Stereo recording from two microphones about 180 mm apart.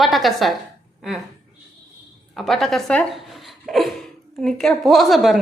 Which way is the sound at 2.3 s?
Centre (ahead or behind).